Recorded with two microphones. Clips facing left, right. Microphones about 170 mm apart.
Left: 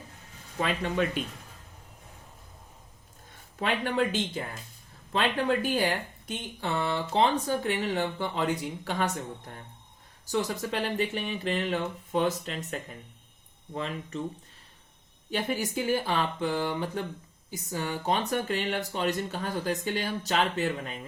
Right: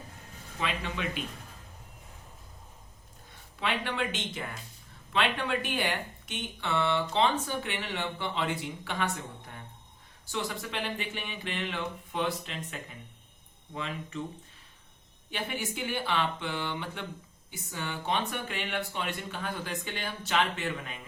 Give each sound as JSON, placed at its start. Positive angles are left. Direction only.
{"t": 0.6, "sound": "speech", "side_deg": 50}
{"t": 3.6, "sound": "speech", "side_deg": 40}
{"t": 15.3, "sound": "speech", "side_deg": 40}